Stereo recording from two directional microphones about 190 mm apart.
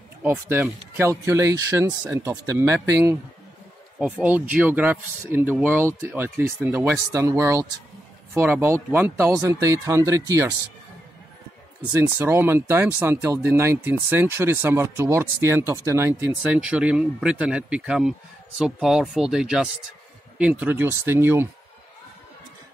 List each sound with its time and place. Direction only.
0.2 s speech: 10° right (ahead or behind)
11.9 s speech: 10° right (ahead or behind)